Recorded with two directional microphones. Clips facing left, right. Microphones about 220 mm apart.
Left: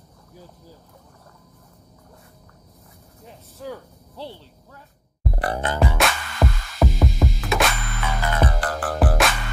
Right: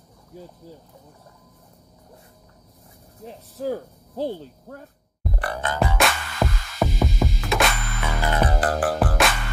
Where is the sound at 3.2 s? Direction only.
40° right (ahead or behind).